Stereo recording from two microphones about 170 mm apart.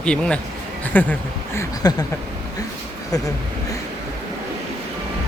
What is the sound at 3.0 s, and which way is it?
Speech, 20° left (ahead or behind).